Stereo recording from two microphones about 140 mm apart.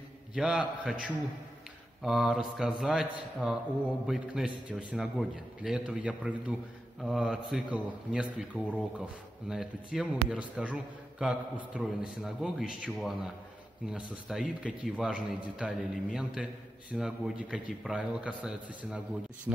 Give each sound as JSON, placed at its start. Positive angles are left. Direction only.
{"t": 0.3, "sound": "a man's voice", "side_deg": -5}
{"t": 2.0, "sound": "a man's voice", "side_deg": -5}